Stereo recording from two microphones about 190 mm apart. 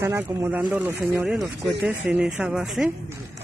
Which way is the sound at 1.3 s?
Centre (ahead or behind).